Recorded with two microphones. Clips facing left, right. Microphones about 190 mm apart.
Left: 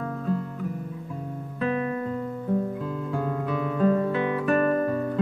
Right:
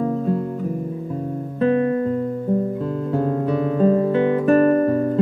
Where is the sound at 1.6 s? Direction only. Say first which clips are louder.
Right 9 dB; 35° right (ahead or behind).